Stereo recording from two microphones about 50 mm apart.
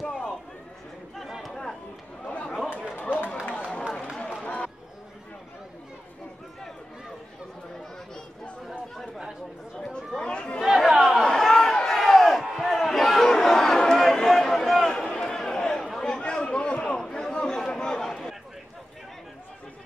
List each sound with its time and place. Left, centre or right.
1.1 s a sound: centre
1.5 s chatter: centre
2.2 s chatter: left
3.0 s run: left
4.4 s a sound: centre
8.6 s chatter: centre
9.8 s chatter: centre
10.6 s chatter: centre
11.0 s a sound: centre